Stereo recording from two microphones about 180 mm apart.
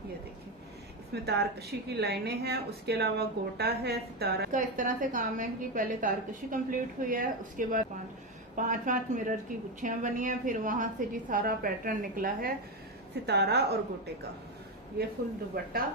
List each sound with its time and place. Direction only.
1.1 s a woman's voice: 65° right (ahead or behind)
13.1 s a woman's voice: 65° right (ahead or behind)
15.6 s a woman's voice: 60° right (ahead or behind)